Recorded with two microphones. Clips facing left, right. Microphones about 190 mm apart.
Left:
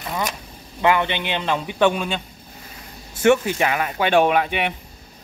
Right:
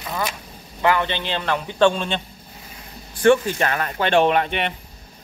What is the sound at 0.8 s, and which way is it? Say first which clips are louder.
Speech: left 1 dB; 15° left (ahead or behind).